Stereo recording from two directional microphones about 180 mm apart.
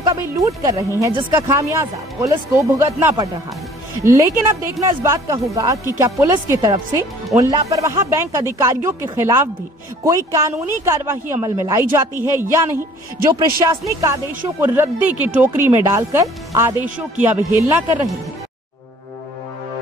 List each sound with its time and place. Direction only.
0.0 s speech: 20° right (ahead or behind)